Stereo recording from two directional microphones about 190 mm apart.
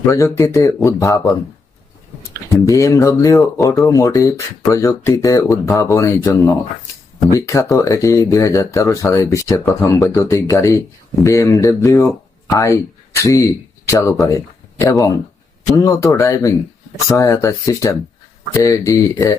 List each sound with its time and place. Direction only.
0.1 s speech: 15° left (ahead or behind)
2.3 s speech: 15° left (ahead or behind)